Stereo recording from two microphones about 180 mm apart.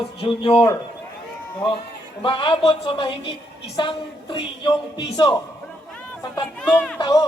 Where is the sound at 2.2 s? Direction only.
30° left (ahead or behind).